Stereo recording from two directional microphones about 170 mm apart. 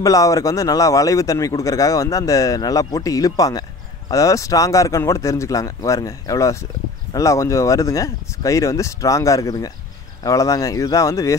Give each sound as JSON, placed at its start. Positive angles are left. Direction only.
{"t": 0.0, "sound": "speech", "side_deg": 20}